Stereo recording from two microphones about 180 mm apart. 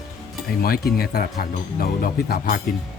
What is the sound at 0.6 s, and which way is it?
Speech, 55° left (ahead or behind).